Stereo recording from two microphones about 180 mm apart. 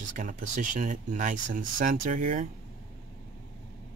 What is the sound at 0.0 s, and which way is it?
Speech, 45° right (ahead or behind).